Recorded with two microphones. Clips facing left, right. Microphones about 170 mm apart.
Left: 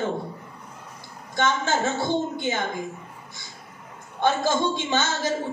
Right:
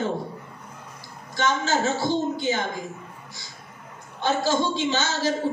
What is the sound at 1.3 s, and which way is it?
A man's voice, 55° left (ahead or behind).